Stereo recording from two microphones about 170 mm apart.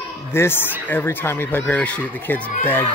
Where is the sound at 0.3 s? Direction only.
15° left (ahead or behind).